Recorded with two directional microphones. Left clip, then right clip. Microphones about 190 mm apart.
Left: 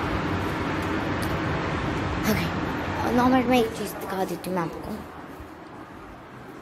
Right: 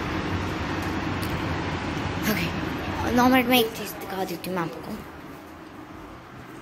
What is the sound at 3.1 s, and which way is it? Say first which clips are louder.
Speech: right 2 dB; 10° right (ahead or behind).